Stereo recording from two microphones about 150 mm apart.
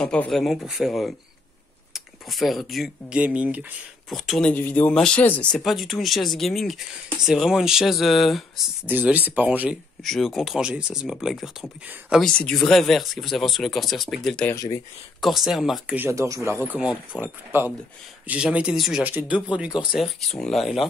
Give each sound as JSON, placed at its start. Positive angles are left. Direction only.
{"t": 0.0, "sound": "speech", "side_deg": 5}
{"t": 4.1, "sound": "speech", "side_deg": 5}
{"t": 8.8, "sound": "speech", "side_deg": -10}
{"t": 10.0, "sound": "speech", "side_deg": 0}
{"t": 14.4, "sound": "speech", "side_deg": 20}
{"t": 15.1, "sound": "speech", "side_deg": 0}
{"t": 16.0, "sound": "speech", "side_deg": -20}